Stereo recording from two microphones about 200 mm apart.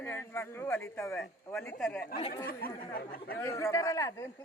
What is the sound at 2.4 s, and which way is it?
Speech, 45° left (ahead or behind).